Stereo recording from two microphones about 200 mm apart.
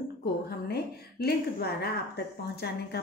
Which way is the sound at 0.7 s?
50° left (ahead or behind).